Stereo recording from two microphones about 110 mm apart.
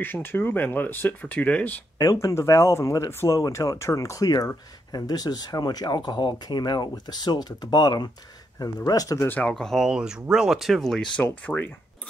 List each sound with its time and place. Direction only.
0.0 s speech: 20° left (ahead or behind)
2.0 s speech: 30° left (ahead or behind)
9.3 s speech: 10° left (ahead or behind)
11.2 s speech: 15° left (ahead or behind)